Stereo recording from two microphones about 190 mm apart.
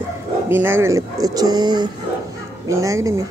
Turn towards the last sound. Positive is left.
turn(degrees=-15)  # may be behind; listen again after turning